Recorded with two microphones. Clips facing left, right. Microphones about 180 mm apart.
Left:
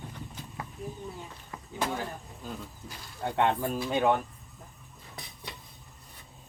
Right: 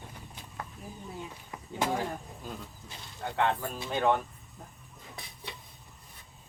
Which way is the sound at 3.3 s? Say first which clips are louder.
Left 2 dB; 25° left (ahead or behind).